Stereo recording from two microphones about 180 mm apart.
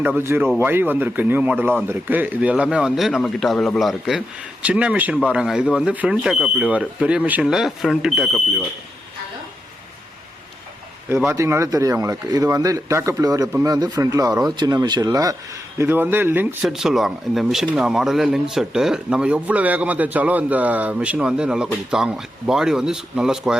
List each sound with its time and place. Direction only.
0.0 s speech: 10° right (ahead or behind)
11.3 s speech: 15° right (ahead or behind)